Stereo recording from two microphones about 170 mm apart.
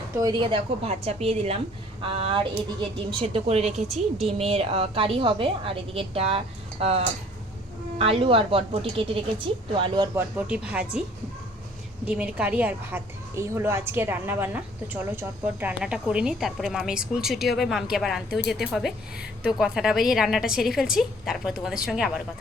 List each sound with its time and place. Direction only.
0.2 s a woman's voice: 25° right (ahead or behind)
10.2 s a woman's voice: 10° right (ahead or behind)
12.0 s a woman's voice: 10° right (ahead or behind)